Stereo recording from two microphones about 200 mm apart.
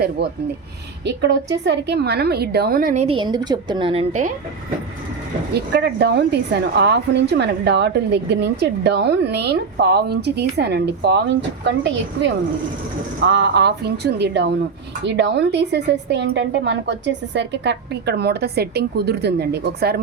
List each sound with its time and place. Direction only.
0.2 s a woman's voice: 60° right (ahead or behind); by 4.0 s 25° right (ahead or behind)
5.5 s a woman's voice: 55° right (ahead or behind)